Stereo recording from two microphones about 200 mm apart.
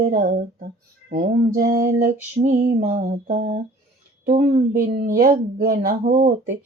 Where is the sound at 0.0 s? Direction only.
45° right (ahead or behind).